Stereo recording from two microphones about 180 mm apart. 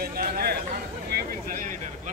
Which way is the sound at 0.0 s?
55° right (ahead or behind).